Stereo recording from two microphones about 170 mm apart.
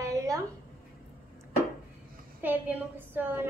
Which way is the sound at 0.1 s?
20° right (ahead or behind).